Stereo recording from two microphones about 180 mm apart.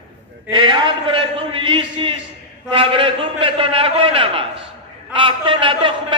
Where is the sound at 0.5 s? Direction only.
25° right (ahead or behind).